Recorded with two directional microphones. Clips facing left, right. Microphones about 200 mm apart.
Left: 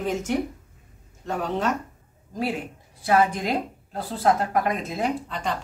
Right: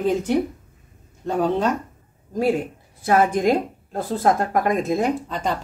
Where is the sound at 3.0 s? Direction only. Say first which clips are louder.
Right 4 dB; 50° right (ahead or behind).